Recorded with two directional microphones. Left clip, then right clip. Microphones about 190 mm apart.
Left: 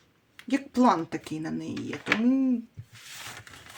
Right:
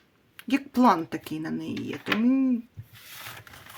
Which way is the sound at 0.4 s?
30° right (ahead or behind).